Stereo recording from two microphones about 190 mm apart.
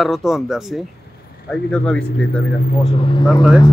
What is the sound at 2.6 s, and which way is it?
Speech, 40° left (ahead or behind).